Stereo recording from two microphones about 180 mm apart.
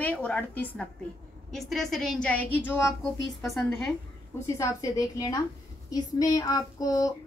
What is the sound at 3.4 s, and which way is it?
Speech, centre (ahead or behind).